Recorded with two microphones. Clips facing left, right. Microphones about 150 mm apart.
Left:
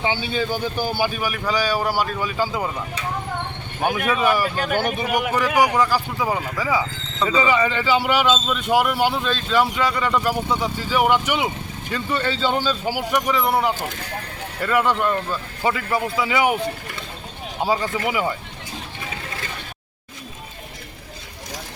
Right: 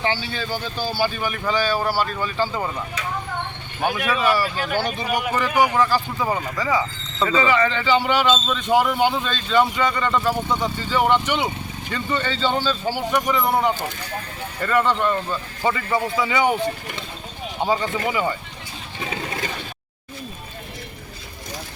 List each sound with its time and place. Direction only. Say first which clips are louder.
0.0 s speech: left 2 dB; 20° left (ahead or behind)